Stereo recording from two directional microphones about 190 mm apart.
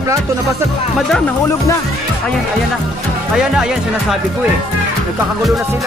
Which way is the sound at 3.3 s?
Centre (ahead or behind).